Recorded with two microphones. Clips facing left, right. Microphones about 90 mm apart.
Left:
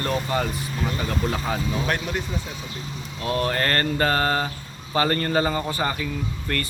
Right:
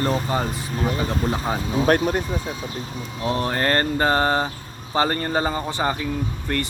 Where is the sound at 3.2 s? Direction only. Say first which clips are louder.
Right 1 dB; 20° right (ahead or behind).